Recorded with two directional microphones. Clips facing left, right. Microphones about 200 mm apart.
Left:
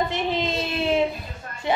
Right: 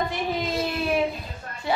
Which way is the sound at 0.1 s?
25° left (ahead or behind).